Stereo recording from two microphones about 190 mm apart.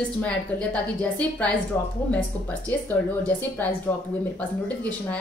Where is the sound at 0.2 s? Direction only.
5° left (ahead or behind).